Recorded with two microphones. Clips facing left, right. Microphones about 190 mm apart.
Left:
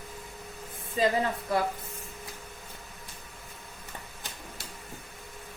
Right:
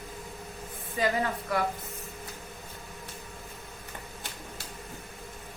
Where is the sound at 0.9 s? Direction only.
25° left (ahead or behind).